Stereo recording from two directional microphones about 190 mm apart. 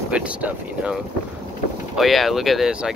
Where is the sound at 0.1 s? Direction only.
5° right (ahead or behind).